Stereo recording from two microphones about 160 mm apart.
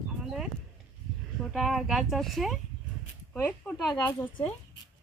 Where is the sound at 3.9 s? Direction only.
30° left (ahead or behind).